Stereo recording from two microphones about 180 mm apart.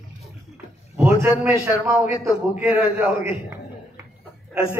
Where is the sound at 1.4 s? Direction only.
15° right (ahead or behind).